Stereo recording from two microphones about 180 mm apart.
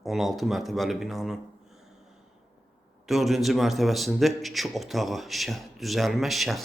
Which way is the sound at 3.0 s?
Centre (ahead or behind).